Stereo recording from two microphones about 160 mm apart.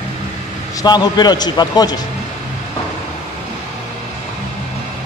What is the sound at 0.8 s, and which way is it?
A man's voice, 25° left (ahead or behind).